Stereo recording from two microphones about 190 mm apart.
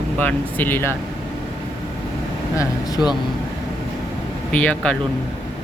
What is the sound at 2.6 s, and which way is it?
Speech, 20° left (ahead or behind).